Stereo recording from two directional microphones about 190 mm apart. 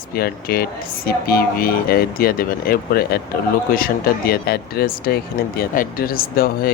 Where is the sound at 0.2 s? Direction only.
50° left (ahead or behind).